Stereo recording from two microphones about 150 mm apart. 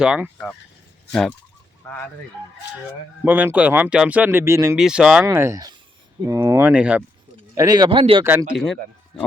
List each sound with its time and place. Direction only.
0.0 s speech: 5° right (ahead or behind)
1.8 s speech: 10° left (ahead or behind)
3.2 s speech: 10° right (ahead or behind)
4.8 s speech: 5° right (ahead or behind)
5.2 s speech: 20° right (ahead or behind)
7.5 s speech: 25° right (ahead or behind)
8.2 s speech: 15° right (ahead or behind)
8.5 s speech: centre (ahead or behind)